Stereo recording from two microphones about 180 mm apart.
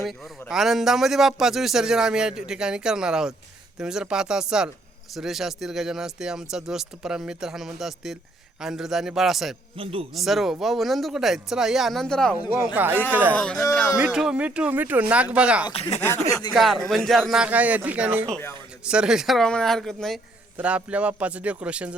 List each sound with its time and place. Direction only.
0.5 s speech: centre (ahead or behind)
9.7 s speech: 30° right (ahead or behind)
10.2 s speech: centre (ahead or behind)
12.6 s speech: 10° right (ahead or behind)
13.3 s speech: 5° left (ahead or behind)
15.7 s speech: 35° left (ahead or behind)
16.0 s speech: 15° left (ahead or behind)
16.5 s speech: centre (ahead or behind)
18.3 s speech: 10° left (ahead or behind)
18.9 s speech: 5° right (ahead or behind)